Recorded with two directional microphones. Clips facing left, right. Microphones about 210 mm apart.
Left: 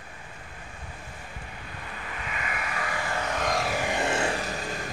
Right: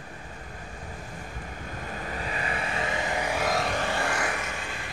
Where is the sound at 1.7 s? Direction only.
40° right (ahead or behind); by 3.8 s centre (ahead or behind).